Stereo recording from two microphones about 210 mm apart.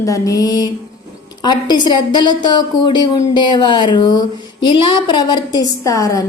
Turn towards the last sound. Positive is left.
turn(degrees=15)  # may be behind; listen again after turning